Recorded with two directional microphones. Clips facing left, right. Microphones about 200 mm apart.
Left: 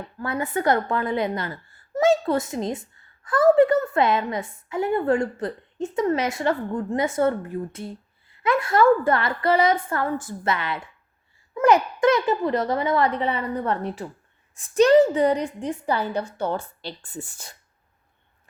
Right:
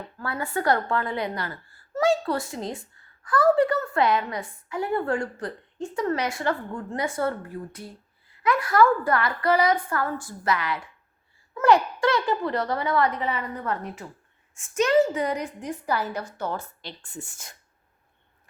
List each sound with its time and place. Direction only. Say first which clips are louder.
0.2 s a woman's voice: left 3 dB; 20° left (ahead or behind)